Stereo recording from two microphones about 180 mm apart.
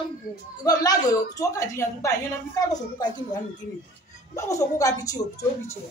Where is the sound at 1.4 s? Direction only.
15° left (ahead or behind).